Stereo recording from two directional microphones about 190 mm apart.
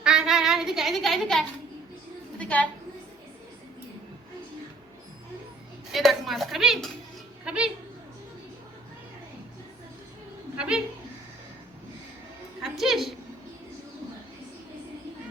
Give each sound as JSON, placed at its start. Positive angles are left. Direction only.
{"t": 0.0, "sound": "a sound", "side_deg": -5}
{"t": 5.9, "sound": "speech", "side_deg": 0}
{"t": 7.4, "sound": "music", "side_deg": -5}
{"t": 10.6, "sound": "speech", "side_deg": -5}
{"t": 12.6, "sound": "a woman's voice", "side_deg": 0}